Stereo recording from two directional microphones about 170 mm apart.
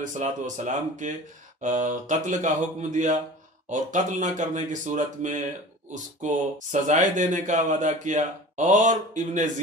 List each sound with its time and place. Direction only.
0.0 s speech: 45° right (ahead or behind)